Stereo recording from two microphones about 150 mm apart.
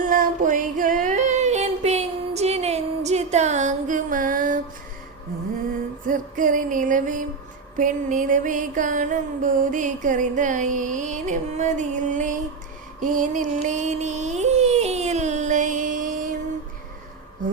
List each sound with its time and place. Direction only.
0.1 s female singing: 65° right (ahead or behind)
6.1 s a sound: 60° right (ahead or behind)
13.0 s music: 60° right (ahead or behind)